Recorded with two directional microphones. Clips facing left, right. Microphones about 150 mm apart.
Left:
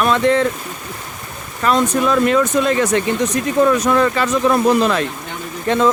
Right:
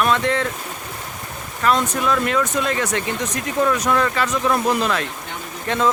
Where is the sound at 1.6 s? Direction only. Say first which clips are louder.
Left 3 dB; 30° left (ahead or behind).